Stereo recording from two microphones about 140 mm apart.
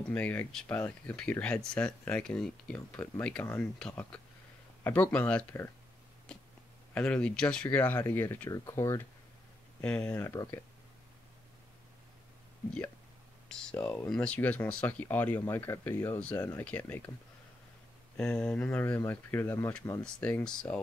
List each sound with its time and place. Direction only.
0.1 s speech: 10° left (ahead or behind)
6.3 s a sound: 5° left (ahead or behind)
6.9 s speech: 10° left (ahead or behind)
9.8 s speech: 10° left (ahead or behind)
10.3 s speech: 25° left (ahead or behind)
13.5 s speech: 5° left (ahead or behind)
18.1 s speech: 5° left (ahead or behind)